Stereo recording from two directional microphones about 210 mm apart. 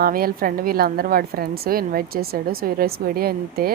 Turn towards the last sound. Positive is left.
turn(degrees=-45)  # may be behind; listen again after turning